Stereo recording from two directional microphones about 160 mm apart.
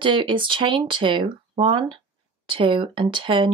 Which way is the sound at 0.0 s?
30° right (ahead or behind).